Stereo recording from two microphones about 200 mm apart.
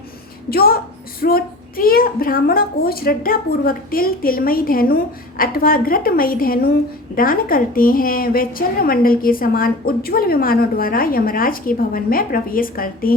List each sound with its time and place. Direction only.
0.5 s a woman's voice: 50° left (ahead or behind)